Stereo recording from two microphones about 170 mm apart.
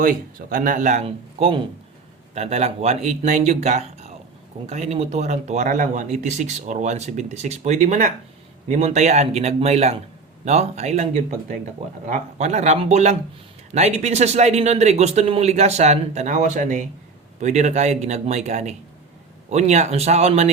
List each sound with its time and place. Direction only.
0.0 s speech: 55° right (ahead or behind)